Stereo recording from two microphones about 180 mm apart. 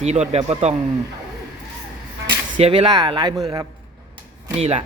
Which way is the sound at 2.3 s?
30° right (ahead or behind).